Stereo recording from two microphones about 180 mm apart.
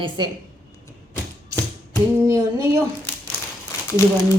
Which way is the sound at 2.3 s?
15° right (ahead or behind).